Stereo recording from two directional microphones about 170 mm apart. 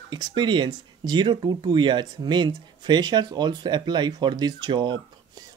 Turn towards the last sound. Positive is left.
turn(degrees=-25)  # may be behind; listen again after turning